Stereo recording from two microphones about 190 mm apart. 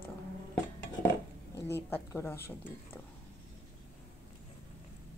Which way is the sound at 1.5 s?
10° left (ahead or behind).